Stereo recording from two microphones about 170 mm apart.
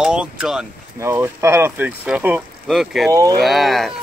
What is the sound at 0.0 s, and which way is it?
Speech, 5° right (ahead or behind).